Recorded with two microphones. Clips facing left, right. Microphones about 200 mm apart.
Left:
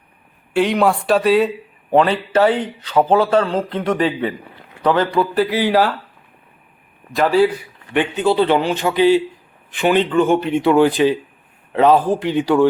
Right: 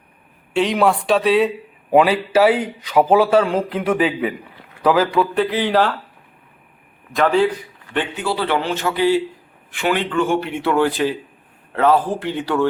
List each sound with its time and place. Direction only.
0.5 s a man's voice: centre (ahead or behind)
7.1 s a man's voice: 5° left (ahead or behind)
7.9 s a man's voice: 20° left (ahead or behind)